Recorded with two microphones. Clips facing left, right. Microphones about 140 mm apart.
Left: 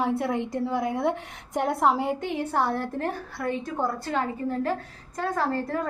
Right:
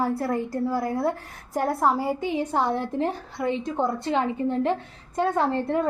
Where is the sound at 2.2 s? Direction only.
15° right (ahead or behind).